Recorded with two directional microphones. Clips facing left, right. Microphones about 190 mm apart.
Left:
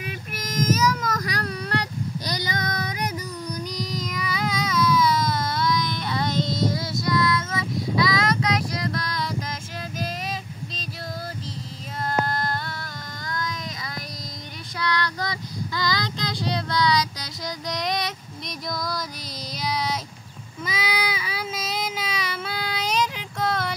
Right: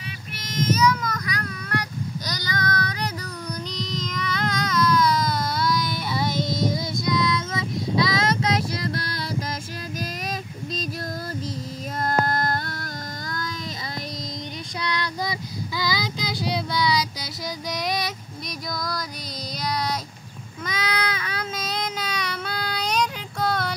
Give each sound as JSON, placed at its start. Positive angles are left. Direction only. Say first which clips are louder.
{"t": 0.4, "sound": "child singing", "louder": "right 1 dB", "side_deg": 45}
{"t": 12.0, "sound": "humming", "louder": "right 2 dB", "side_deg": -45}
{"t": 14.8, "sound": "child singing", "louder": "left 2 dB", "side_deg": -15}
{"t": 18.7, "sound": "music", "louder": "left 1 dB", "side_deg": 0}
{"t": 19.6, "sound": "a sound", "louder": "even", "side_deg": 5}
{"t": 20.6, "sound": "child singing", "louder": "even", "side_deg": 5}